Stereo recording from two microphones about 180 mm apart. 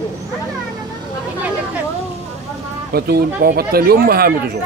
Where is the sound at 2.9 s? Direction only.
60° right (ahead or behind).